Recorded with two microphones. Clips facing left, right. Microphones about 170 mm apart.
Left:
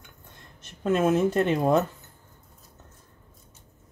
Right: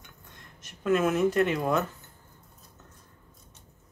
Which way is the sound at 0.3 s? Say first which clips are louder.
Left 2 dB; 30° left (ahead or behind).